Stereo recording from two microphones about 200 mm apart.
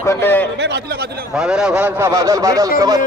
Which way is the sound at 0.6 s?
60° right (ahead or behind).